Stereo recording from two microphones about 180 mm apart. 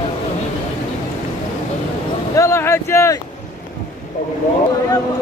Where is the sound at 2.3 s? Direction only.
15° left (ahead or behind).